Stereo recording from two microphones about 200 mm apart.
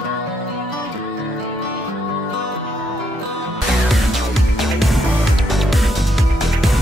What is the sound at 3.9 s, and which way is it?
Music, centre (ahead or behind).